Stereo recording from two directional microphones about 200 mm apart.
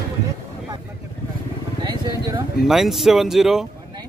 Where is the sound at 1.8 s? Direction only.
20° right (ahead or behind).